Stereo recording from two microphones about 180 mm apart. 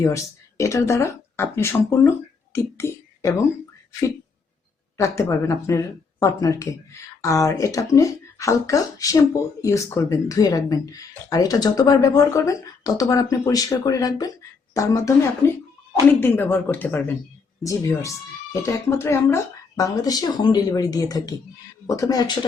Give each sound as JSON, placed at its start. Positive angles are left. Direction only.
{"t": 0.0, "sound": "speech", "side_deg": 15}
{"t": 4.9, "sound": "speech", "side_deg": 15}